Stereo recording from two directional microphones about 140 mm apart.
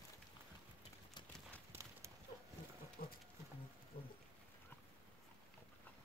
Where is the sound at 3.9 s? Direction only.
90° left.